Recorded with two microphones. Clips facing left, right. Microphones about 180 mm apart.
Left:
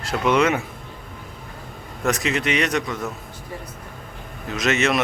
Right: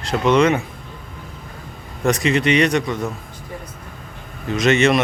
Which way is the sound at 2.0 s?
Centre (ahead or behind).